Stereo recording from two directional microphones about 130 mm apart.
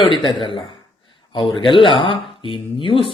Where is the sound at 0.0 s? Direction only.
40° left (ahead or behind).